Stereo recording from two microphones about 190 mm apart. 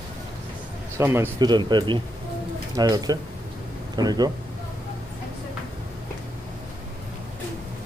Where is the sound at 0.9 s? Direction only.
15° right (ahead or behind).